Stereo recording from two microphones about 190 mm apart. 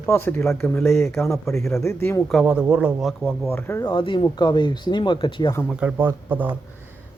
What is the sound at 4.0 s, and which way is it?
Speech, 25° left (ahead or behind).